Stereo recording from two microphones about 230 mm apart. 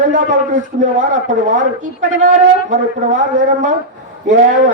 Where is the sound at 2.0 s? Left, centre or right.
Right.